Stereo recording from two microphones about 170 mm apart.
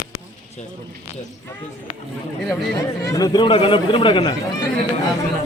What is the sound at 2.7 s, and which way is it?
Speech, 20° left (ahead or behind).